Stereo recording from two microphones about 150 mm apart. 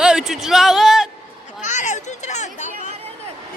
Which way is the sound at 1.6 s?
55° left (ahead or behind).